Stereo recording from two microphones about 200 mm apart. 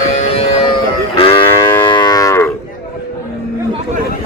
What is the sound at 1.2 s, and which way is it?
Moo, 30° left (ahead or behind).